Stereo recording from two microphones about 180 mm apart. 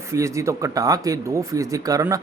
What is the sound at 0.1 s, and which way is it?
Speech, 15° right (ahead or behind).